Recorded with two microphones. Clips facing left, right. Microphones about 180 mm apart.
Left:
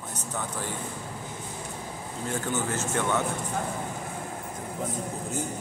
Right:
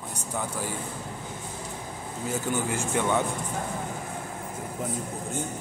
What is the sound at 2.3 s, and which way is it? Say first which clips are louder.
Speech: right 1 dB; 10° right (ahead or behind).